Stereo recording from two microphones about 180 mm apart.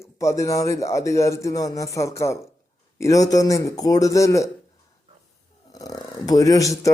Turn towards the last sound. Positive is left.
turn(degrees=20)  # may be behind; listen again after turning